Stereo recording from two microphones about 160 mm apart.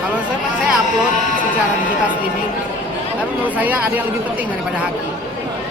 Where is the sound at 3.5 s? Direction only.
10° right (ahead or behind).